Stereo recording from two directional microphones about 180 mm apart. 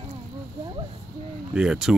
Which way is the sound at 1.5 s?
5° right (ahead or behind).